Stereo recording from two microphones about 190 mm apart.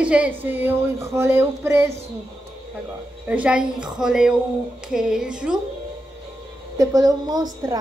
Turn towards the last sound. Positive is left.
turn(degrees=-20)  # may be behind; listen again after turning